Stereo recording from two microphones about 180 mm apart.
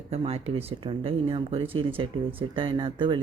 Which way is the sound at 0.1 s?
35° right (ahead or behind).